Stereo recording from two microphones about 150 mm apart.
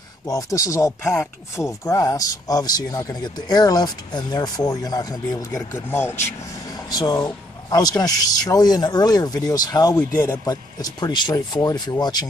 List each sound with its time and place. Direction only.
0.3 s speech: 25° left (ahead or behind)